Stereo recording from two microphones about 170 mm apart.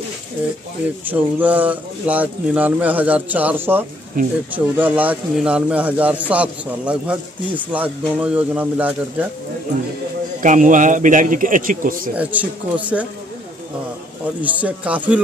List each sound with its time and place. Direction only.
1.0 s a man's voice: 10° right (ahead or behind)
10.4 s a man's voice: 50° right (ahead or behind)
12.2 s a man's voice: 10° right (ahead or behind)
14.4 s a man's voice: 10° right (ahead or behind)